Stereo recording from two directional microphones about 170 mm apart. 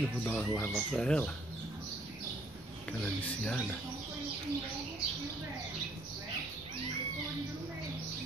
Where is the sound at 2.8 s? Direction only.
10° left (ahead or behind).